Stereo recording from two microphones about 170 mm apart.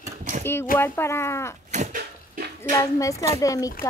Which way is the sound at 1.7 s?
50° right (ahead or behind).